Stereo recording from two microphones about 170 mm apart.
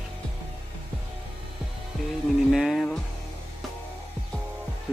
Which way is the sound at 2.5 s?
Centre (ahead or behind).